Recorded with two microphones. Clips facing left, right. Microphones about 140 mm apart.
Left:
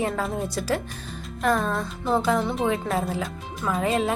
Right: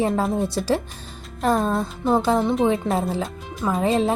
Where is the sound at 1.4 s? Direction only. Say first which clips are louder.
Right 3 dB; 30° right (ahead or behind).